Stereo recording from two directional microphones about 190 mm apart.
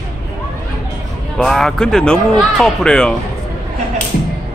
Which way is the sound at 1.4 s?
Centre (ahead or behind).